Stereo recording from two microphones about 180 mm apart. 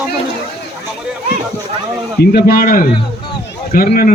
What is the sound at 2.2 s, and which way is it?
A man's voice, 65° left (ahead or behind).